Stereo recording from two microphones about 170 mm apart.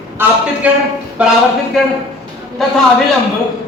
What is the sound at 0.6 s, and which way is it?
Speech, 10° right (ahead or behind).